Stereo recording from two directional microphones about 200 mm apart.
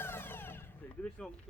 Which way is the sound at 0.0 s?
10° left (ahead or behind).